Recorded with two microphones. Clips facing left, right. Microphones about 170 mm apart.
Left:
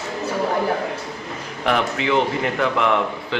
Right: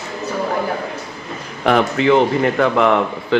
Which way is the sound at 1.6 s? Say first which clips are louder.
Right 6 dB; 50° right (ahead or behind).